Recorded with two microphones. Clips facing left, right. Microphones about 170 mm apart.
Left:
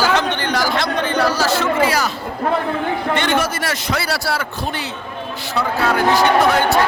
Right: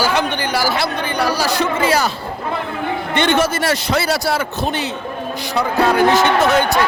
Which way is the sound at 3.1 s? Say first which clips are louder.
Right 6 dB; 25° right (ahead or behind).